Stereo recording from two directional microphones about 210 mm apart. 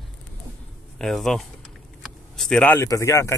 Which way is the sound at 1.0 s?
Centre (ahead or behind).